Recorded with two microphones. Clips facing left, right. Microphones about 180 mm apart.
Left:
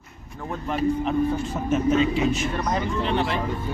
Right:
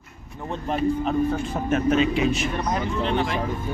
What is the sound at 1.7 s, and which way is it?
Speech, 70° right (ahead or behind).